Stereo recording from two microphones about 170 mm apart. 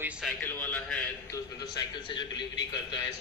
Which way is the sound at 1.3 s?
25° left (ahead or behind).